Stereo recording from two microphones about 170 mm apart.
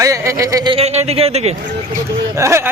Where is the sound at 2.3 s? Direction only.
15° right (ahead or behind).